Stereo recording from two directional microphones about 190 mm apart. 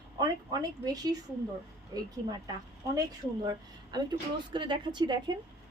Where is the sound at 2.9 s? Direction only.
20° right (ahead or behind).